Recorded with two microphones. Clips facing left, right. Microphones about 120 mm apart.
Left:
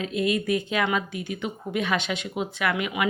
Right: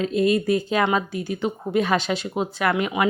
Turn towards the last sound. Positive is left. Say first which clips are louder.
# right 4 dB
turn(degrees=-35)  # may be behind; listen again after turning